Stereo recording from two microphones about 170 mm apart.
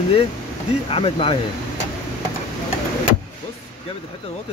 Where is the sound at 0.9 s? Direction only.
30° left (ahead or behind).